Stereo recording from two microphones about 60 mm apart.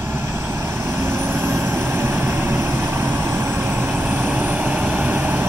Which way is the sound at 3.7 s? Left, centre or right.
Right.